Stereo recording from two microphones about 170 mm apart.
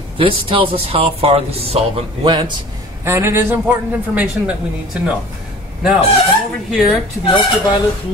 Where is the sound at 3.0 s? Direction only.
15° right (ahead or behind).